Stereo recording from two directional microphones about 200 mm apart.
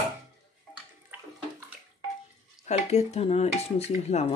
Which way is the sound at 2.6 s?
35° left (ahead or behind).